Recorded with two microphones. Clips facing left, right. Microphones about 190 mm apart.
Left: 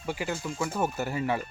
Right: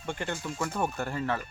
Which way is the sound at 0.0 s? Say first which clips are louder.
Left 2 dB; 5° left (ahead or behind).